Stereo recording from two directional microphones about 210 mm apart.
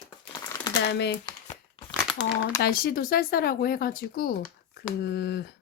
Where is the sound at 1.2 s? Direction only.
20° left (ahead or behind).